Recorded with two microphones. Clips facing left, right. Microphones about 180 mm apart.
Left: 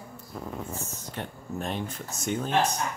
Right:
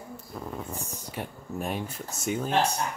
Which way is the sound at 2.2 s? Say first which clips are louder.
Even; 5° right (ahead or behind).